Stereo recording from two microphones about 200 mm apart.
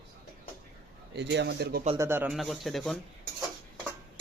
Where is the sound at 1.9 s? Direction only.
15° right (ahead or behind).